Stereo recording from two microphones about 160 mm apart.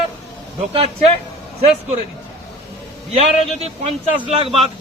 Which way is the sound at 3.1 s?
40° right (ahead or behind).